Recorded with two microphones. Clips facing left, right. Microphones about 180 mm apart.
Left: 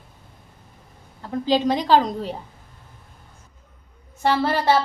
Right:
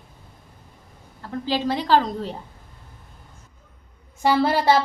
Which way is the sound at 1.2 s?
15° left (ahead or behind).